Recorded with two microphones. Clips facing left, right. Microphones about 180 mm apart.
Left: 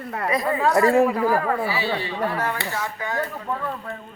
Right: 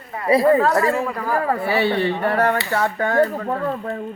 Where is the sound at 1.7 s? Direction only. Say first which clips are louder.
Right 7 dB; 60° right (ahead or behind); by 4.0 s 45° right (ahead or behind).